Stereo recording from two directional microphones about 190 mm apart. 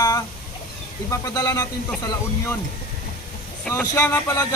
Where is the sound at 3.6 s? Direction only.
15° left (ahead or behind).